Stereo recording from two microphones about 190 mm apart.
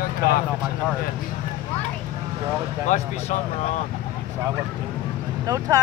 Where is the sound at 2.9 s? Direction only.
40° left (ahead or behind).